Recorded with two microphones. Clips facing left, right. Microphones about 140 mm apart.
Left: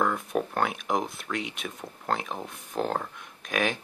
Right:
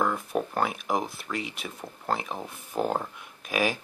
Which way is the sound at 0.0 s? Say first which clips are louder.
Even; 5° right (ahead or behind).